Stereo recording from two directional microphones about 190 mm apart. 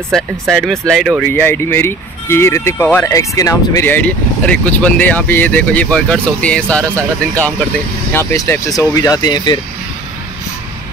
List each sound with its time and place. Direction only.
0.1 s speech: centre (ahead or behind)
1.3 s speech: 10° left (ahead or behind)
8.1 s speech: 15° left (ahead or behind)